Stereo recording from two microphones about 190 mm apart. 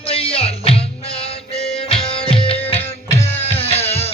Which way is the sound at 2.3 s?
30° left (ahead or behind).